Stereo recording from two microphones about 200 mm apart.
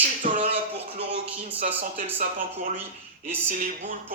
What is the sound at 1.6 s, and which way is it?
Speech, 30° right (ahead or behind).